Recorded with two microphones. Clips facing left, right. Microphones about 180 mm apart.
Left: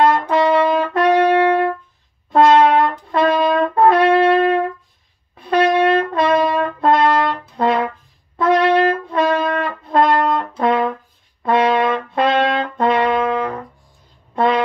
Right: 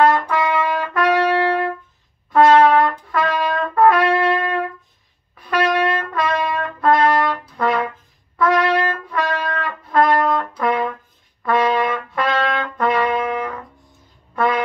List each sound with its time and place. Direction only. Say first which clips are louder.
0.3 s trumpet: left 5 dB; 30° left (ahead or behind)
2.9 s trumpet: left 5 dB; 25° left (ahead or behind)
14.3 s a sound: left 3 dB; 25° left (ahead or behind)